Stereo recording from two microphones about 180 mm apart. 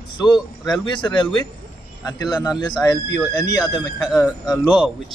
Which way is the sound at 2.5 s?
25° left (ahead or behind).